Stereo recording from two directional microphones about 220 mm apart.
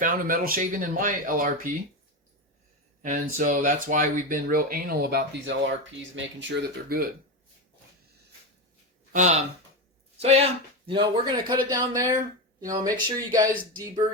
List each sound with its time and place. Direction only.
0.0 s speech: 40° right (ahead or behind)
3.0 s speech: 35° right (ahead or behind)
9.1 s a man's voice: 30° right (ahead or behind); by 13.5 s 15° right (ahead or behind)